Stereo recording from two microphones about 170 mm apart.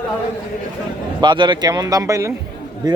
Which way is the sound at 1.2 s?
25° right (ahead or behind).